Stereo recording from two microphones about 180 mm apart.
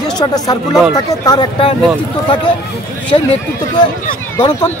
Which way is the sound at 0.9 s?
20° left (ahead or behind).